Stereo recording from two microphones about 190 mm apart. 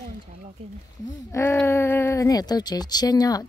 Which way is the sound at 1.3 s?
15° left (ahead or behind).